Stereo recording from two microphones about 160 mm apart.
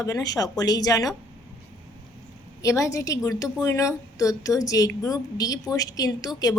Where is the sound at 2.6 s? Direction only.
20° left (ahead or behind).